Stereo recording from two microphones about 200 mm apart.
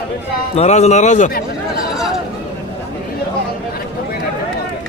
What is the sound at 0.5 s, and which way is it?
Speech, 35° left (ahead or behind).